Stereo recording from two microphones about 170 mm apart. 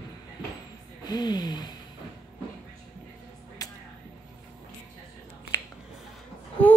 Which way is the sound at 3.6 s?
20° left (ahead or behind).